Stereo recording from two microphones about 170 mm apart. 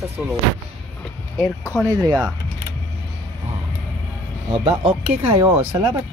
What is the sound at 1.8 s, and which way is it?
Speech, 20° right (ahead or behind).